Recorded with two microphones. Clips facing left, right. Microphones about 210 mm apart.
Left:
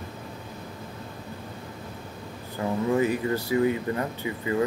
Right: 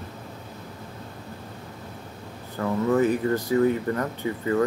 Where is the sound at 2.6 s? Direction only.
20° left (ahead or behind).